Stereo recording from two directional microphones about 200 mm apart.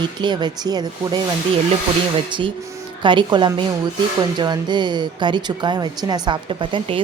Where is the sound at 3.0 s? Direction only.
25° right (ahead or behind).